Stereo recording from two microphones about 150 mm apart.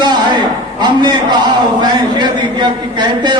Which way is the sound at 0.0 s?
30° right (ahead or behind).